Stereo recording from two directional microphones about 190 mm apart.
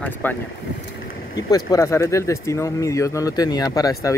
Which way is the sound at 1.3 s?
20° left (ahead or behind).